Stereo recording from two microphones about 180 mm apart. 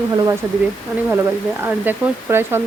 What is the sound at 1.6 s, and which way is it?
Speech, 10° right (ahead or behind).